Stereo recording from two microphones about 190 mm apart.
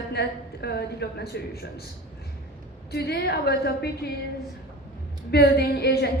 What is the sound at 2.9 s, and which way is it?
A woman's voice, 60° left (ahead or behind).